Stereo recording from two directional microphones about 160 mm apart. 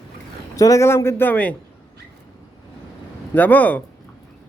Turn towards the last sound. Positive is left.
turn(degrees=10)  # may be behind; listen again after turning